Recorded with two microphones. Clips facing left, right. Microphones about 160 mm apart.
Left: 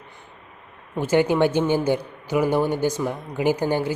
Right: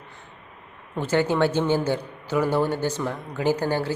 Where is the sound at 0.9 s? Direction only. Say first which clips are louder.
Left 3 dB; 10° left (ahead or behind).